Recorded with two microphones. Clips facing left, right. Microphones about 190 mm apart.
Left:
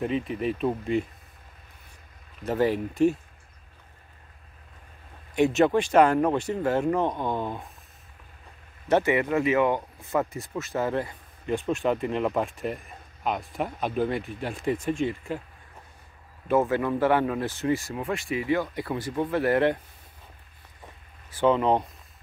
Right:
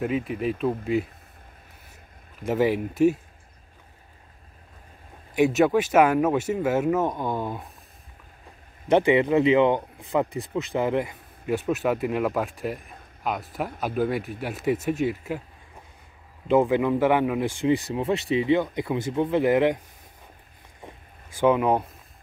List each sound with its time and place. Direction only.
0.0 s speech: 5° right (ahead or behind)
2.4 s speech: 10° right (ahead or behind)
5.3 s speech: 5° right (ahead or behind)
8.8 s speech: 15° right (ahead or behind)
16.4 s speech: 15° right (ahead or behind)
21.4 s speech: 10° right (ahead or behind)